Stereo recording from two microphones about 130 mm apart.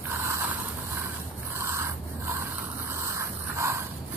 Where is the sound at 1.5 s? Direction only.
20° right (ahead or behind).